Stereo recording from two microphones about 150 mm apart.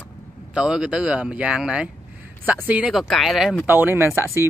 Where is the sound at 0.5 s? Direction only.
5° right (ahead or behind).